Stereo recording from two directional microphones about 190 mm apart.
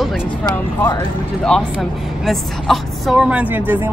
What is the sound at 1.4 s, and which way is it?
A woman's voice, centre (ahead or behind).